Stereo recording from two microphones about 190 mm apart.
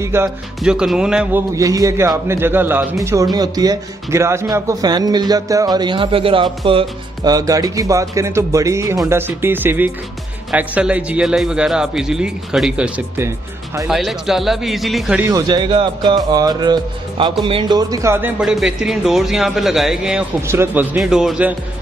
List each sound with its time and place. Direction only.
0.0 s a man's voice: 15° right (ahead or behind)
1.5 s a man's voice: 15° right (ahead or behind); by 15.1 s centre (ahead or behind)
15.2 s a man's voice: 20° right (ahead or behind); by 21.5 s 5° right (ahead or behind)